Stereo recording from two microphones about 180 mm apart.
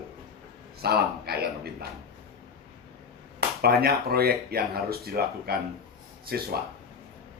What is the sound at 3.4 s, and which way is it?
Speech, 60° right (ahead or behind).